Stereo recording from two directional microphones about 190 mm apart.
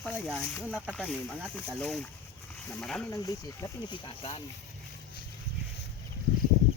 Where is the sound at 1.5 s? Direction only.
5° left (ahead or behind).